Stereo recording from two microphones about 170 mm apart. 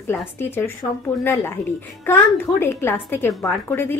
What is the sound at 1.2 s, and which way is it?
A woman's voice, 15° left (ahead or behind).